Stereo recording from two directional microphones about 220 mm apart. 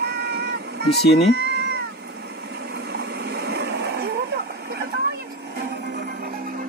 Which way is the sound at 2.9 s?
45° right (ahead or behind).